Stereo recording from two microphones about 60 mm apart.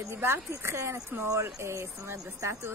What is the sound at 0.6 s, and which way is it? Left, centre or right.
Speech, right.